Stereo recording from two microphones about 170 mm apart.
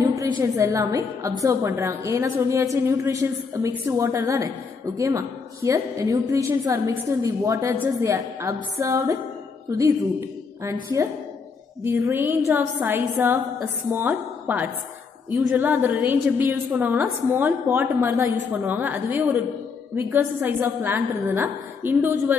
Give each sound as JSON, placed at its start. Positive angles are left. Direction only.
{"t": 0.0, "sound": "a sound", "side_deg": -20}
{"t": 0.4, "sound": "a woman's voice", "side_deg": -20}
{"t": 11.8, "sound": "a woman's voice", "side_deg": -15}